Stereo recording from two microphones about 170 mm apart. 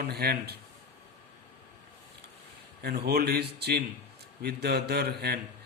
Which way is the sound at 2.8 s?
70° right (ahead or behind).